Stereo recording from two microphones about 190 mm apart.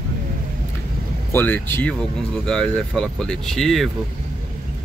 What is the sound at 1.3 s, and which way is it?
Speech, 10° left (ahead or behind).